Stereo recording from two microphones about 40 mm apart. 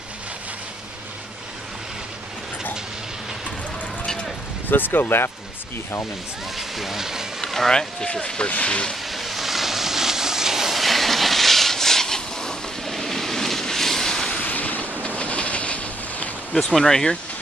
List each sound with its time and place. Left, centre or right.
4.6 s speech: left
6.5 s speech: centre
7.4 s run: centre
7.7 s speech: centre
9.0 s vehicle: centre
12.9 s waves: centre
14.4 s a sound: left
15.0 s train: left
16.7 s speech: centre